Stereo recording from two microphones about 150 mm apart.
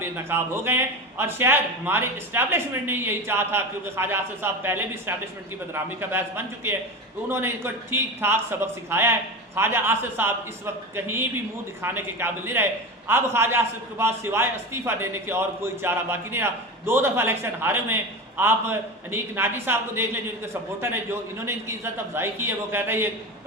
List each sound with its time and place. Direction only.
0.0 s a man's voice: 15° right (ahead or behind)